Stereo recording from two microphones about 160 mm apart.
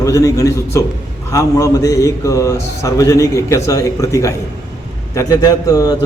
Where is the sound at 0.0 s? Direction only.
20° left (ahead or behind).